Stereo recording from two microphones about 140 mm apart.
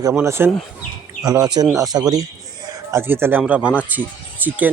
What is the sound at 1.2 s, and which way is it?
Speech, 25° right (ahead or behind).